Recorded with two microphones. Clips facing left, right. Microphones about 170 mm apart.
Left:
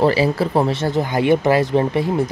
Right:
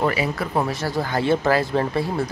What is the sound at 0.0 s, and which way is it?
Speech, 30° left (ahead or behind).